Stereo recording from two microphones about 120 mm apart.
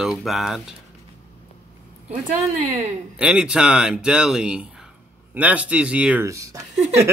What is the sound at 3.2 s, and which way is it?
Speech, 10° right (ahead or behind).